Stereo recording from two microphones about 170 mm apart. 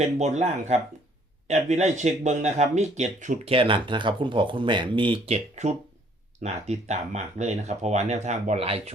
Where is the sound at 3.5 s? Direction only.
30° right (ahead or behind).